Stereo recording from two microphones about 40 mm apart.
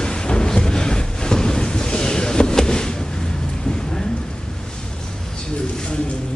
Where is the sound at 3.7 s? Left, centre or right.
Centre.